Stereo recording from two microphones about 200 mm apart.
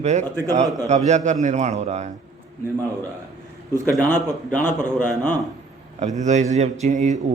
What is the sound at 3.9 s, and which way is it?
Speech, 5° left (ahead or behind).